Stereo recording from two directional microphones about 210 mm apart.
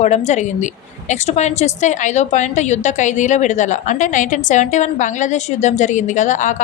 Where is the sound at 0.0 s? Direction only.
35° left (ahead or behind).